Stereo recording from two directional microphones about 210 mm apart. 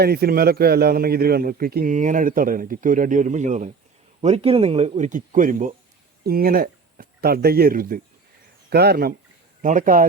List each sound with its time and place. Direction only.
0.0 s a man's voice: 50° right (ahead or behind)